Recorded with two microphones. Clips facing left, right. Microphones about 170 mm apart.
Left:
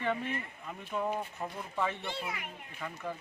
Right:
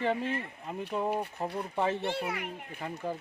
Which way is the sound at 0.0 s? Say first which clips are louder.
Right 4 dB; 30° right (ahead or behind).